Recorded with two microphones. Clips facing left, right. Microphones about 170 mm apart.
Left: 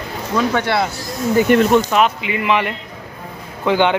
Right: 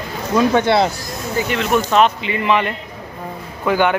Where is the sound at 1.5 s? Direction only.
50° left (ahead or behind).